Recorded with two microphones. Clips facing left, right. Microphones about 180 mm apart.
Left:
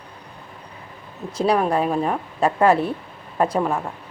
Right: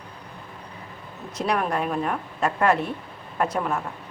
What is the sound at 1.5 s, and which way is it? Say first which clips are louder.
A woman's voice: left 5 dB; 30° left (ahead or behind).